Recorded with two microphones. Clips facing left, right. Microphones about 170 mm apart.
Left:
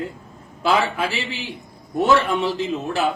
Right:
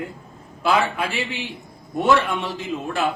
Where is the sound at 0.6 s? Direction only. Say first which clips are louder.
Left 1 dB; centre (ahead or behind).